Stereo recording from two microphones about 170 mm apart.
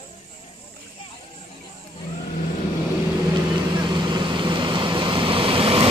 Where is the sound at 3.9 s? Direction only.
25° right (ahead or behind).